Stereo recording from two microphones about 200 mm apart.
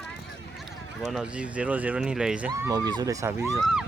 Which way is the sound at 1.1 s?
5° right (ahead or behind).